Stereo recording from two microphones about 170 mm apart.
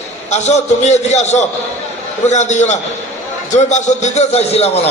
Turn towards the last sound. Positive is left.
turn(degrees=40)  # may be behind; listen again after turning